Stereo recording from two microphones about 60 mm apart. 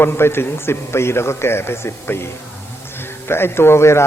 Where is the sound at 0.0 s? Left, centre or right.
Left.